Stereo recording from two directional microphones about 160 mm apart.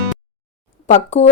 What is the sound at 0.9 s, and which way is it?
Speech, 45° left (ahead or behind).